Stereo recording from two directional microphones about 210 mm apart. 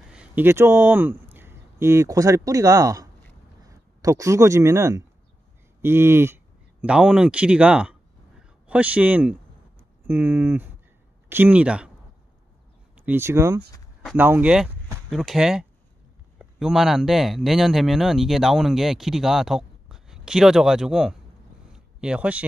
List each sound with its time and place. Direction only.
0.1 s speech: 5° right (ahead or behind)
12.9 s speech: 10° right (ahead or behind)
21.7 s a sound: 5° right (ahead or behind)